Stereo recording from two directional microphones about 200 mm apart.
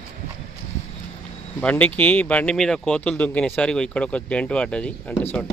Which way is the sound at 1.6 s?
5° left (ahead or behind).